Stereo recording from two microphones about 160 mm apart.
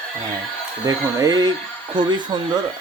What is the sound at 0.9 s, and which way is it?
Speech, 25° right (ahead or behind).